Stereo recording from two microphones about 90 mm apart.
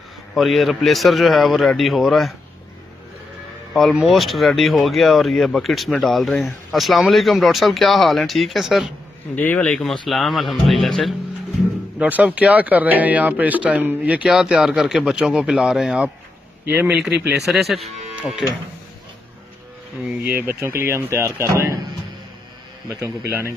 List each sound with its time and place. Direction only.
0.3 s speech: centre (ahead or behind)
3.9 s speech: 5° right (ahead or behind)
9.3 s a man's voice: 20° left (ahead or behind)
10.0 s speech: centre (ahead or behind)
12.0 s a man's voice: 15° right (ahead or behind)
16.6 s speech: 25° right (ahead or behind)
16.9 s a man's voice: 10° right (ahead or behind)
20.2 s speech: 25° right (ahead or behind)
22.8 s speech: 40° right (ahead or behind)